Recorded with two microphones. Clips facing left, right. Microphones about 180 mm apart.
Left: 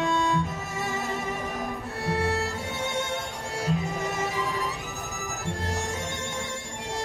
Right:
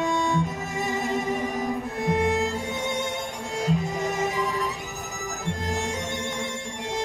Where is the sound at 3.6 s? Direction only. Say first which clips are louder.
Right 3 dB; 15° right (ahead or behind).